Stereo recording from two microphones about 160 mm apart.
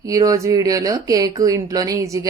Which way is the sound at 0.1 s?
20° right (ahead or behind).